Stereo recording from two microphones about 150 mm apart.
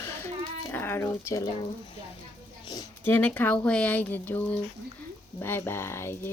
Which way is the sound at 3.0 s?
10° left (ahead or behind).